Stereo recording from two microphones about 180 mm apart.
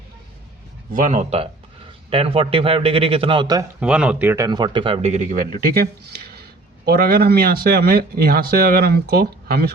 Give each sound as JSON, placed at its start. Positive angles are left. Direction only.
{"t": 0.9, "sound": "a man's voice", "side_deg": -45}
{"t": 3.8, "sound": "speech", "side_deg": -5}
{"t": 5.5, "sound": "speech", "side_deg": -55}